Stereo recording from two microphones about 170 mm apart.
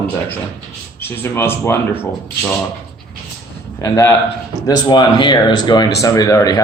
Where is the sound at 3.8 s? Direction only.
20° left (ahead or behind).